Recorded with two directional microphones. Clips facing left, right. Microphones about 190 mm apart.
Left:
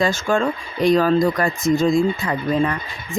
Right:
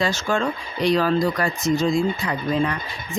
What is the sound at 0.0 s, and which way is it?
Speech, 50° left (ahead or behind).